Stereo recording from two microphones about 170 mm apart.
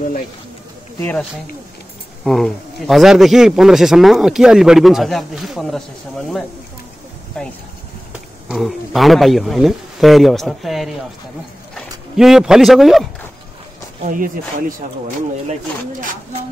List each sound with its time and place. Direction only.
2.2 s speech: centre (ahead or behind)
14.0 s speech: 55° right (ahead or behind)